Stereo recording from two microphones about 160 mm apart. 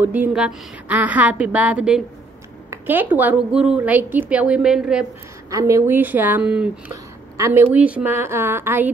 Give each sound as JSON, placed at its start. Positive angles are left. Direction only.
{"t": 0.0, "sound": "a woman's voice", "side_deg": -10}
{"t": 5.5, "sound": "a woman's voice", "side_deg": -20}
{"t": 7.3, "sound": "a woman's voice", "side_deg": -20}